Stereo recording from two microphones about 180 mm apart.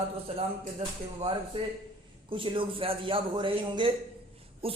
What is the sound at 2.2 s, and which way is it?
A man's voice, 30° right (ahead or behind).